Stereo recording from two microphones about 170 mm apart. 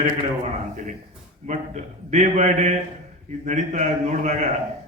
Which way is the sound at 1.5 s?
45° right (ahead or behind).